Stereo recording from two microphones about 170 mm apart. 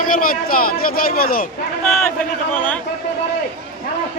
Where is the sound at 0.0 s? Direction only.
55° left (ahead or behind).